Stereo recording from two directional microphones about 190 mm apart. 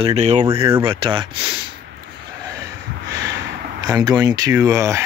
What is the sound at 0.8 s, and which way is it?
Speech, 25° right (ahead or behind).